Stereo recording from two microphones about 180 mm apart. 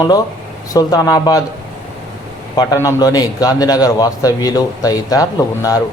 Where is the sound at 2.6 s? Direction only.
20° left (ahead or behind).